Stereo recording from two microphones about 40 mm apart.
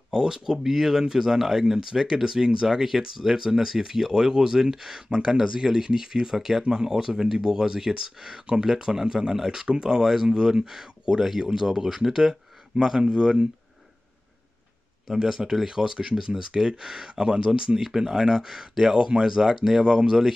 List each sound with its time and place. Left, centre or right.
0.1 s speech: centre
15.0 s speech: centre